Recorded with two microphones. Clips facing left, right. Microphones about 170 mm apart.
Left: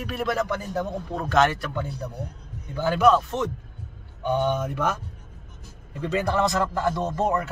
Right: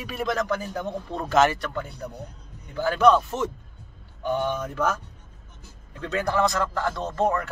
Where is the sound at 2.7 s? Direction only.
15° left (ahead or behind).